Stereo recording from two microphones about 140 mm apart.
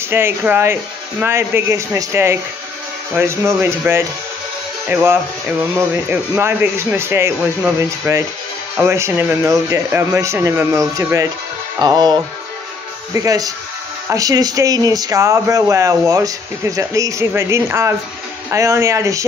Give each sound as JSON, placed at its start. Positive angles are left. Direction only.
{"t": 0.1, "sound": "speech", "side_deg": -15}